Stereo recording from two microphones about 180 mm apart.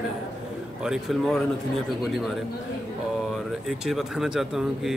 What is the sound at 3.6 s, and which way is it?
Speech, centre (ahead or behind).